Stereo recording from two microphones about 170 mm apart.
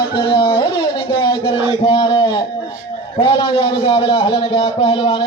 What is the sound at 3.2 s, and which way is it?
A man's voice, 30° left (ahead or behind).